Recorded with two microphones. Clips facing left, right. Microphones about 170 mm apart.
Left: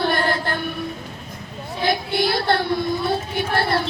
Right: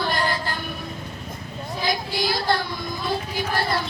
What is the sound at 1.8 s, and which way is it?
Music, 60° left (ahead or behind).